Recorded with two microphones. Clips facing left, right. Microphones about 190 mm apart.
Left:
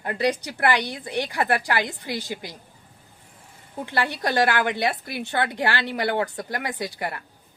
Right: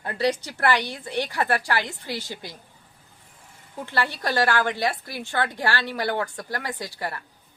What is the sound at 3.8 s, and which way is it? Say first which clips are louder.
A woman's voice: left 1 dB; 15° left (ahead or behind).